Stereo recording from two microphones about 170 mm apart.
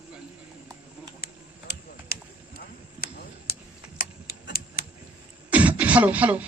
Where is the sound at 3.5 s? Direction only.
65° left (ahead or behind).